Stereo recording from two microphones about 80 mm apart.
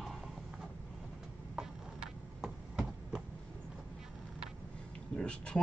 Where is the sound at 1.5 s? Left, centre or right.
Centre.